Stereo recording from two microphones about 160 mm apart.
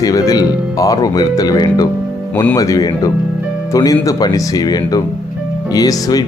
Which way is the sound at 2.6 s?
20° left (ahead or behind).